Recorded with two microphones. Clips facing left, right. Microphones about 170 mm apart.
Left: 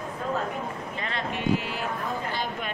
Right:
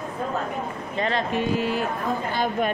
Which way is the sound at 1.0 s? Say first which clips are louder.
Right 7 dB; 35° right (ahead or behind).